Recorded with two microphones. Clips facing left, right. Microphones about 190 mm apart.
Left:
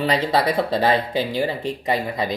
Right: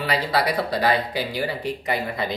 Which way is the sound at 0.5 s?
20° left (ahead or behind).